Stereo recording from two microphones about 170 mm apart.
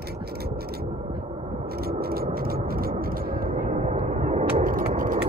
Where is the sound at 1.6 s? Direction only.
65° right (ahead or behind).